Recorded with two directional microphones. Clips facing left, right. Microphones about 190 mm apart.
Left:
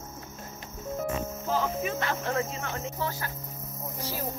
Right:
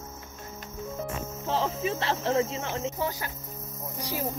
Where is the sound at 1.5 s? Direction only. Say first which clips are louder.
Right 1 dB; 30° right (ahead or behind).